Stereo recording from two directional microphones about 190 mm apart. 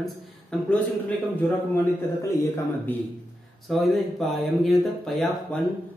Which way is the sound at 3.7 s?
Centre (ahead or behind).